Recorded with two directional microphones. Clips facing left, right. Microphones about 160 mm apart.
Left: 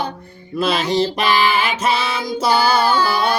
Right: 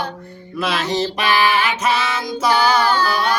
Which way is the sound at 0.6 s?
30° left (ahead or behind).